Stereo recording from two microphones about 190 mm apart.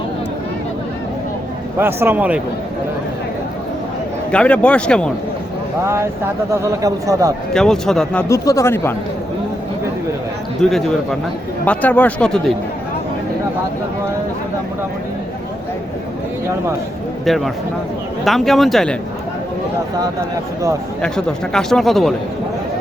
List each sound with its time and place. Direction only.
1.8 s speech: 10° right (ahead or behind)
4.3 s a man's voice: 5° left (ahead or behind)
5.8 s speech: 15° right (ahead or behind)
7.5 s a man's voice: centre (ahead or behind)
8.3 s speech: 15° left (ahead or behind)
10.6 s a man's voice: centre (ahead or behind)
17.2 s a man's voice: centre (ahead or behind)
21.5 s a man's voice: centre (ahead or behind)